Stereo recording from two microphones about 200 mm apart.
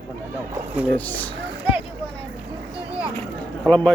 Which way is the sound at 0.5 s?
10° right (ahead or behind).